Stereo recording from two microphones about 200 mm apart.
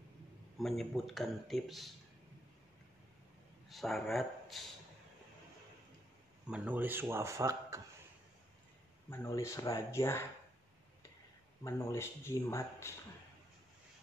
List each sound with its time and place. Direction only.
0.6 s a man's voice: centre (ahead or behind)
3.6 s speech: centre (ahead or behind)
6.4 s speech: 5° right (ahead or behind)
9.1 s speech: 15° left (ahead or behind)
11.6 s speech: 15° left (ahead or behind)